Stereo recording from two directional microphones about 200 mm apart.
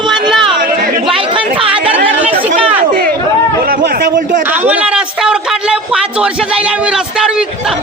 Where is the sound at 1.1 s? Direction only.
25° right (ahead or behind).